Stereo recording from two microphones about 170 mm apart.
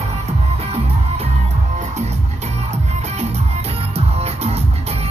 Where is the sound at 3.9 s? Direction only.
35° right (ahead or behind).